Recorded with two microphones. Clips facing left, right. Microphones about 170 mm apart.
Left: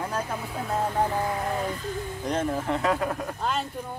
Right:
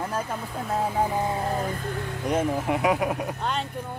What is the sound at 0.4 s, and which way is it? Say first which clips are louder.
Speech: right 1 dB; centre (ahead or behind).